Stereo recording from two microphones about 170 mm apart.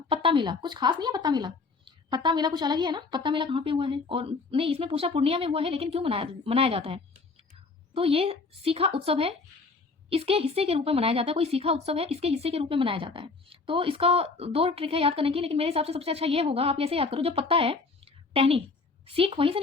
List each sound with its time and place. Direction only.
0.1 s a woman's voice: 30° right (ahead or behind)